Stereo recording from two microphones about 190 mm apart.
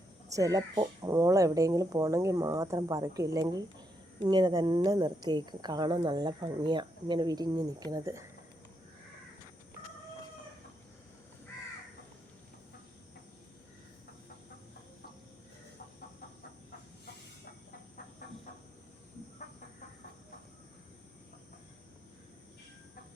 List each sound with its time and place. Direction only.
0.3 s speech: 15° right (ahead or behind)